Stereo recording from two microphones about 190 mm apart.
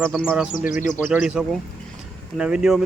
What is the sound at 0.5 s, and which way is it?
Speech, 45° left (ahead or behind).